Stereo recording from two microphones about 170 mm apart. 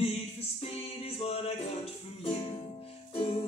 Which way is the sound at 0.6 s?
35° left (ahead or behind).